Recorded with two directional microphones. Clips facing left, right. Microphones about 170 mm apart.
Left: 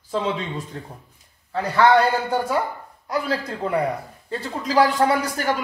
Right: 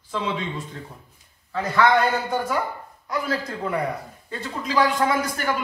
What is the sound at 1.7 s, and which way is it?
A man's voice, 35° left (ahead or behind).